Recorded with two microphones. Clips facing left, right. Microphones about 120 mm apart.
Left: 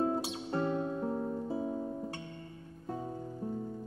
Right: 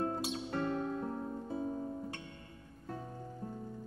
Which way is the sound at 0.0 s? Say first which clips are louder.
Left 4 dB; 15° left (ahead or behind).